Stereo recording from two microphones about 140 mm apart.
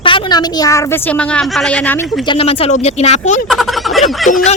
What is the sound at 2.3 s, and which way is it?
Speech, 45° left (ahead or behind).